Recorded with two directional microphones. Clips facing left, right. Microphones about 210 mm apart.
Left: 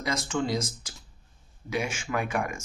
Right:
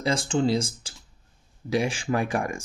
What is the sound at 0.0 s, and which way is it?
Speech, 30° right (ahead or behind).